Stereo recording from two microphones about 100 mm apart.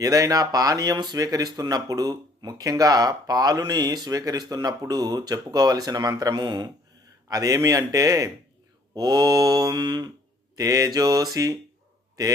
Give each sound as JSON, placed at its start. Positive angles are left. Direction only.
{"t": 0.0, "sound": "speech", "side_deg": -35}
{"t": 7.3, "sound": "speech", "side_deg": -35}
{"t": 10.5, "sound": "speech", "side_deg": -35}